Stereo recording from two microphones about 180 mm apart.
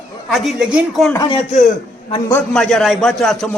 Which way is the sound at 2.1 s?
25° left (ahead or behind).